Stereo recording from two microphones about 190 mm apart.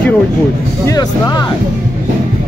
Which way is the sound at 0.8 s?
20° left (ahead or behind).